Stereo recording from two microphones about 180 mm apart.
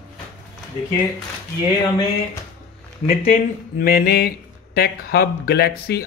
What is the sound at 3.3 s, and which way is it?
Speech, 55° left (ahead or behind).